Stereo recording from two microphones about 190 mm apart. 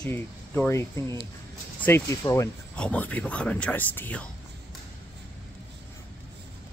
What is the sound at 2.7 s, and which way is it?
Speech, 5° left (ahead or behind).